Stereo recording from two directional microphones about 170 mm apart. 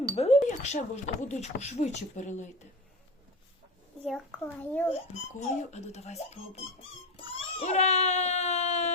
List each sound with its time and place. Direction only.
0.2 s speech: 40° left (ahead or behind)
4.0 s a child's voice: 5° left (ahead or behind)
5.4 s speech: 40° left (ahead or behind)
7.3 s cat: 40° left (ahead or behind)